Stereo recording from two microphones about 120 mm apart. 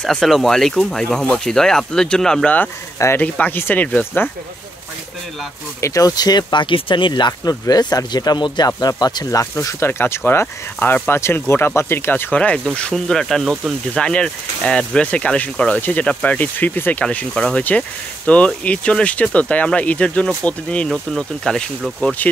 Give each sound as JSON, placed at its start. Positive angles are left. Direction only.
{"t": 0.0, "sound": "speech", "side_deg": 5}
{"t": 5.8, "sound": "speech", "side_deg": 25}